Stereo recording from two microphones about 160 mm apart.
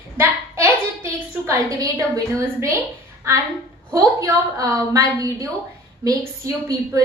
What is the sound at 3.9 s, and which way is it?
A woman's voice, 20° right (ahead or behind).